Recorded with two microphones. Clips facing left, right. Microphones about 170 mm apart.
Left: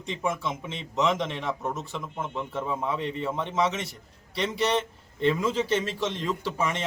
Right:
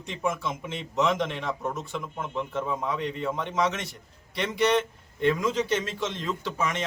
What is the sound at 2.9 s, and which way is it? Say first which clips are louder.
Speech: even; 30° left (ahead or behind).